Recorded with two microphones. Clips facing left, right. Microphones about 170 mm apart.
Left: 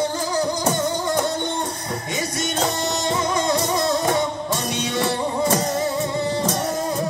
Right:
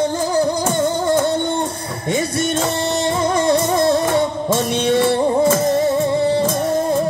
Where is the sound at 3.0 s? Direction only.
60° right (ahead or behind).